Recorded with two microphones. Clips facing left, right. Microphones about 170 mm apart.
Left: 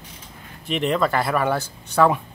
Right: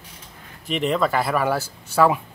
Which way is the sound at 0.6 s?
Centre (ahead or behind).